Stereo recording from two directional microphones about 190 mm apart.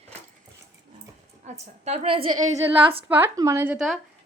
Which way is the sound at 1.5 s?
35° right (ahead or behind).